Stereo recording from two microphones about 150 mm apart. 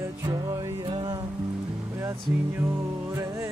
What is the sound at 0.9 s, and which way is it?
Music, 35° right (ahead or behind).